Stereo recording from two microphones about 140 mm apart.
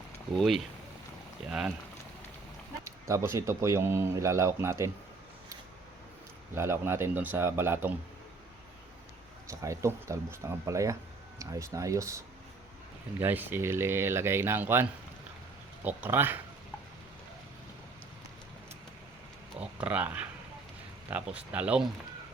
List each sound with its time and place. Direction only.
0.3 s speech: centre (ahead or behind)
2.8 s speech: 20° right (ahead or behind)
6.5 s speech: 20° right (ahead or behind)
9.5 s speech: 20° right (ahead or behind)
19.5 s speech: 10° right (ahead or behind)